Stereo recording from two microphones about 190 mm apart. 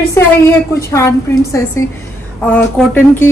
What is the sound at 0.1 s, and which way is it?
A woman's voice, 15° left (ahead or behind).